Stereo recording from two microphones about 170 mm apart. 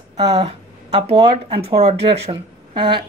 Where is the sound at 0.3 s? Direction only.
40° right (ahead or behind).